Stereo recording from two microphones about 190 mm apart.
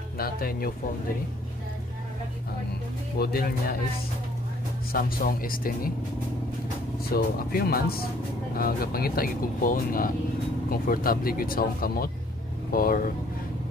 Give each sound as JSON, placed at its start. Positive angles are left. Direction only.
{"t": 0.2, "sound": "speech", "side_deg": 50}
{"t": 3.2, "sound": "speech", "side_deg": 55}
{"t": 4.9, "sound": "speech", "side_deg": 50}
{"t": 7.1, "sound": "speech", "side_deg": 50}